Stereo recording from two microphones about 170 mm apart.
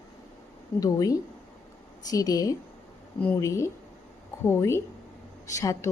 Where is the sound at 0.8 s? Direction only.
20° left (ahead or behind).